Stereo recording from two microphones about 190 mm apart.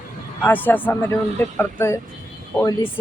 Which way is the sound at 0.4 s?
10° left (ahead or behind).